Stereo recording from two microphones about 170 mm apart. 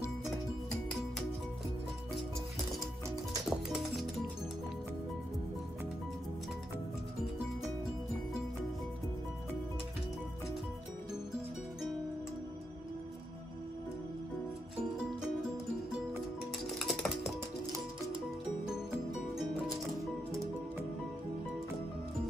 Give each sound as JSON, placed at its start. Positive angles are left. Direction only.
{"t": 3.4, "sound": "music", "side_deg": 0}
{"t": 16.7, "sound": "music", "side_deg": 0}
{"t": 18.7, "sound": "music", "side_deg": -5}